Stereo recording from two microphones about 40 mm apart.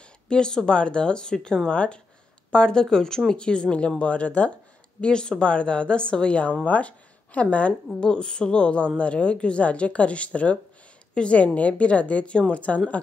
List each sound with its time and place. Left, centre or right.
0.3 s a woman's voice: centre
5.0 s speech: left
7.9 s a woman's voice: left